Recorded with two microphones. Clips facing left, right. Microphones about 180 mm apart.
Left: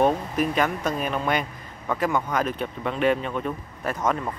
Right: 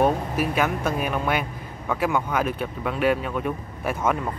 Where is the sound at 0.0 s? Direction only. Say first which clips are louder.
Even; 5° right (ahead or behind).